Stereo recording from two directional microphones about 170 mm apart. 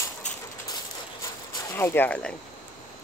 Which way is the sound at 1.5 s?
15° left (ahead or behind).